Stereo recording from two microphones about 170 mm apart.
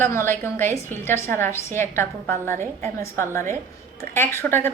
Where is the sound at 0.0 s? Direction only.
15° left (ahead or behind).